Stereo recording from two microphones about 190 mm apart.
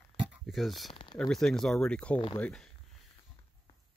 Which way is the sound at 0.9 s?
25° left (ahead or behind).